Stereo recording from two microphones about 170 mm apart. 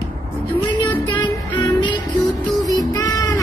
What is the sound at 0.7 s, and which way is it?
Music, 25° left (ahead or behind).